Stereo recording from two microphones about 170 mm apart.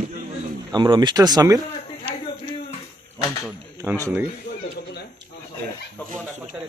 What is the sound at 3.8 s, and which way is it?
Speech, 20° right (ahead or behind).